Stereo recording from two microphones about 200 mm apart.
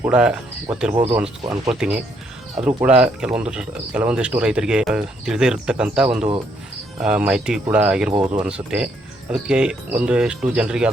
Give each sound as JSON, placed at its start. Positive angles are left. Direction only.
{"t": 0.0, "sound": "speech", "side_deg": -5}
{"t": 8.1, "sound": "speech", "side_deg": -15}
{"t": 8.4, "sound": "speech", "side_deg": -5}